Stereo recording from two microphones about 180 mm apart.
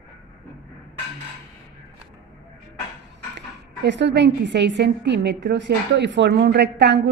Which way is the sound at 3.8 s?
80° right.